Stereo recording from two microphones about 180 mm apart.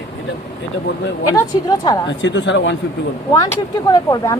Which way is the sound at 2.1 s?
90° left.